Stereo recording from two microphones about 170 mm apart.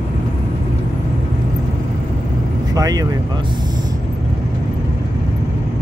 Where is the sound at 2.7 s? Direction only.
20° right (ahead or behind).